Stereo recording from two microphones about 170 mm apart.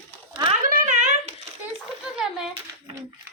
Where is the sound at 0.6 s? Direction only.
50° right (ahead or behind).